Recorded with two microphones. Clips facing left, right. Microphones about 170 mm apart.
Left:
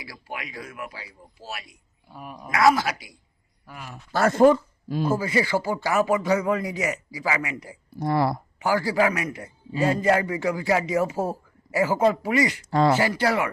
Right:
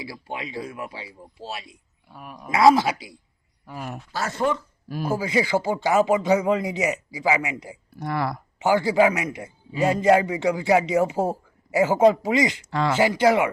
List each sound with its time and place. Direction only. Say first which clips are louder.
0.0 s a man's voice: right 4 dB; 25° right (ahead or behind)
2.0 s speech: left 1 dB; centre (ahead or behind)
2.5 s a man's voice: right 3 dB; 25° right (ahead or behind)
3.8 s speech: right 7 dB; 50° right (ahead or behind)
4.1 s speech: left 8 dB; 55° left (ahead or behind)
4.5 s speech: left 4 dB; 25° left (ahead or behind)
5.0 s a man's voice: right 1 dB; 15° right (ahead or behind)
8.0 s speech: left 4 dB; 30° left (ahead or behind)
8.5 s a man's voice: right 5 dB; 20° right (ahead or behind)